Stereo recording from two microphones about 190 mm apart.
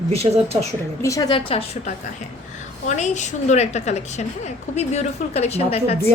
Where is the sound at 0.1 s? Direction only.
35° right (ahead or behind).